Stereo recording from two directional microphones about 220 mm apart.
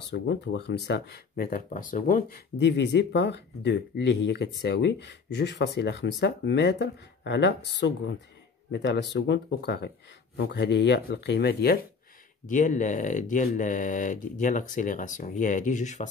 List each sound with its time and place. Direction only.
0.1 s speech: 50° left (ahead or behind)
12.4 s speech: 35° left (ahead or behind)